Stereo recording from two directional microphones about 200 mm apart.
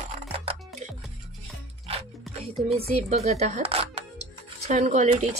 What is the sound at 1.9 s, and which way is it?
Music, 30° right (ahead or behind).